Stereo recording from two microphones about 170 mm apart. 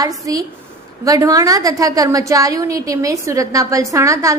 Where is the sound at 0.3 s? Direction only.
20° right (ahead or behind).